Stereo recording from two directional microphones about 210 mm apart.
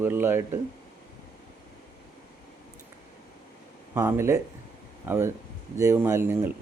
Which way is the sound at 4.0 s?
10° right (ahead or behind).